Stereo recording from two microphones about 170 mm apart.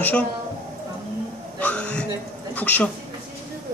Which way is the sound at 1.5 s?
10° left (ahead or behind).